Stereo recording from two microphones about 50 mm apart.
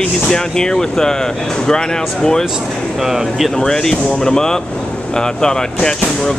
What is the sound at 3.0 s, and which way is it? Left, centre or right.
Speech, centre.